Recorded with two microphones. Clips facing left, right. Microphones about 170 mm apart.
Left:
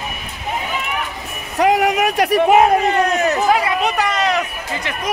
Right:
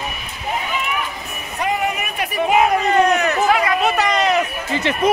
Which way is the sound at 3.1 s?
25° left (ahead or behind).